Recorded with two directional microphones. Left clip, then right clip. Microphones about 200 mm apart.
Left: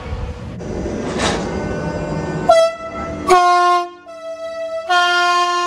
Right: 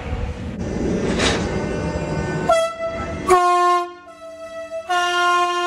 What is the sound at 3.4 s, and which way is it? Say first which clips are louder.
Train: left 3 dB; 55° left (ahead or behind).